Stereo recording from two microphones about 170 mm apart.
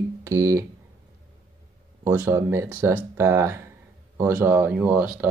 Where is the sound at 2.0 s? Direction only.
15° right (ahead or behind).